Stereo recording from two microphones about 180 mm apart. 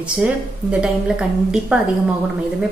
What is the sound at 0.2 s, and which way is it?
A woman's voice, 5° right (ahead or behind).